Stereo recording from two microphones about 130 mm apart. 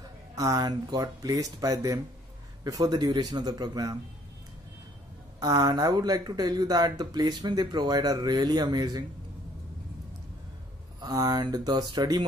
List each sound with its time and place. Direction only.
0.4 s speech: 30° right (ahead or behind)
5.4 s speech: 30° right (ahead or behind)
11.0 s speech: 30° right (ahead or behind)